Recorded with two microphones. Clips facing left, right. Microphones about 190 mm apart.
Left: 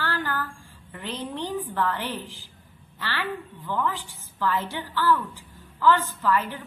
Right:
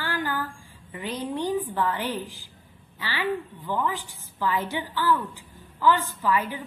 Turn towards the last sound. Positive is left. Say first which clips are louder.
# even
turn(degrees=-10)  # may be behind; listen again after turning